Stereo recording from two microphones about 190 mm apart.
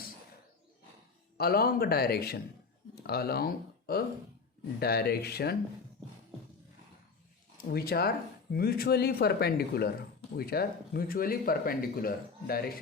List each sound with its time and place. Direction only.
1.4 s speech: 55° left (ahead or behind)
7.7 s speech: 55° left (ahead or behind)